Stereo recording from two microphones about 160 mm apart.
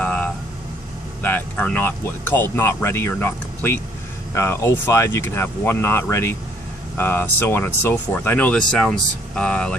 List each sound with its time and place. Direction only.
0.0 s vehicle: 10° left (ahead or behind)
1.2 s speech: 10° left (ahead or behind)